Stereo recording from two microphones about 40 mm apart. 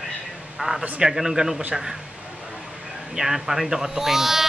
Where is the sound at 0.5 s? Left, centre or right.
Centre.